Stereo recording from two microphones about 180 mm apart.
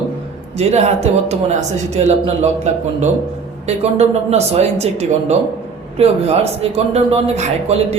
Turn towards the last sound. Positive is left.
turn(degrees=-35)  # may be behind; listen again after turning